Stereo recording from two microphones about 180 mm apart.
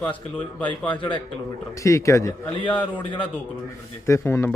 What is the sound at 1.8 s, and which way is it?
A man's voice, 15° left (ahead or behind).